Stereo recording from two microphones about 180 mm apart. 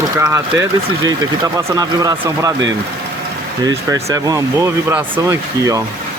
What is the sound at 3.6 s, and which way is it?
Speech, 20° right (ahead or behind).